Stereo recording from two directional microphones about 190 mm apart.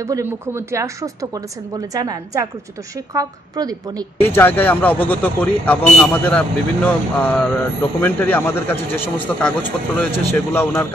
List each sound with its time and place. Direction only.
0.0 s a woman's voice: 15° right (ahead or behind)
3.2 s a woman's voice: 20° right (ahead or behind)
4.2 s speech: 10° left (ahead or behind)